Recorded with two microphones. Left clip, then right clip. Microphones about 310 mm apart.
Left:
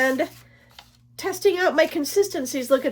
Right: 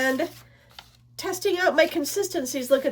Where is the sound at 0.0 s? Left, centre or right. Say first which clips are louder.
Left 3 dB; centre.